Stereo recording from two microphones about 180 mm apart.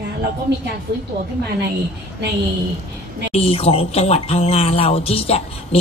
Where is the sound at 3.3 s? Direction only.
35° left (ahead or behind).